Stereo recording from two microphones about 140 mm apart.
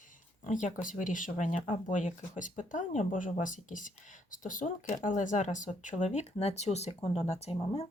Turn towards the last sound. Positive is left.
turn(degrees=45)  # may be behind; listen again after turning